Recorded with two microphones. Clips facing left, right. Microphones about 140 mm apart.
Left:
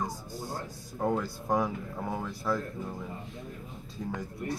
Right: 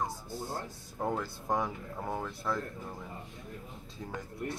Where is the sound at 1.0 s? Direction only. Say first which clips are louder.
Left 4 dB; centre (ahead or behind).